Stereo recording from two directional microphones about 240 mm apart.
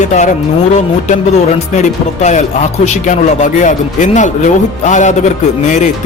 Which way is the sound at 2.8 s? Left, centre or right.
Left.